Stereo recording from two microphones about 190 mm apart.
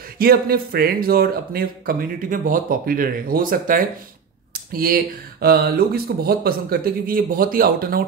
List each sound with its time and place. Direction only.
0.2 s speech: 50° right (ahead or behind)